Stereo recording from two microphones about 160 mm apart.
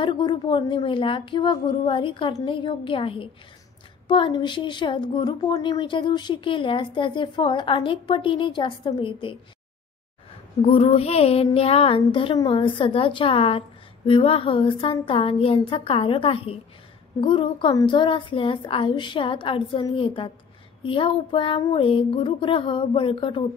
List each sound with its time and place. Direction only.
0.0 s a woman's voice: 30° left (ahead or behind)
10.6 s a woman's voice: 35° left (ahead or behind)